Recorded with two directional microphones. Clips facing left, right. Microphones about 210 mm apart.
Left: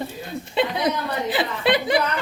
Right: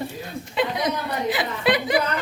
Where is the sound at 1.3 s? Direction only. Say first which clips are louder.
Left 1 dB; 30° left (ahead or behind).